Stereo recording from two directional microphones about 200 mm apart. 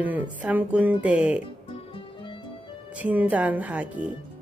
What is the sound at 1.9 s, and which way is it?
Music, 25° left (ahead or behind).